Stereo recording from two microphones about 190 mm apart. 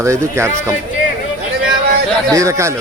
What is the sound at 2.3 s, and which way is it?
Speech, 15° right (ahead or behind).